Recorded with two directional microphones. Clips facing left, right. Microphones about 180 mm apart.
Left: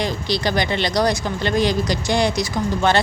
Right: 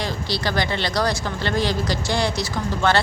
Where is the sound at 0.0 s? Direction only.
20° left (ahead or behind).